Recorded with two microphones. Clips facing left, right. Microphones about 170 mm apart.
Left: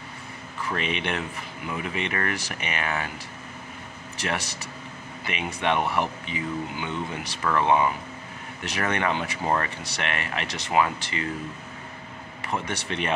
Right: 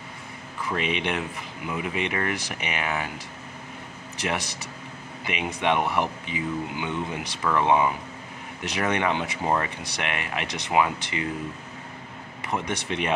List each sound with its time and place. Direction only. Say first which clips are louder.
0.7 s speech: right 1 dB; 15° right (ahead or behind)
4.2 s speech: right 1 dB; 15° right (ahead or behind)
12.4 s speech: right 1 dB; 15° right (ahead or behind)